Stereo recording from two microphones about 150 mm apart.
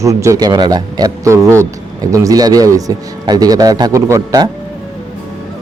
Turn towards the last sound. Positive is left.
turn(degrees=-20)  # may be behind; listen again after turning